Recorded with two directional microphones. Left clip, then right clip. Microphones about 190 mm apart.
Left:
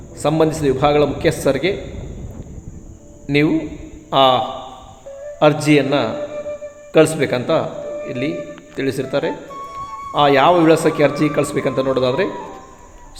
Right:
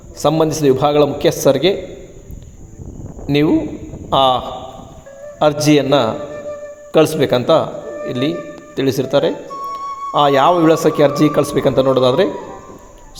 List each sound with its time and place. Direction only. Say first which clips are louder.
0.2 s speech: right 2 dB; 20° right (ahead or behind)
3.2 s a man's voice: right 2 dB; 20° right (ahead or behind)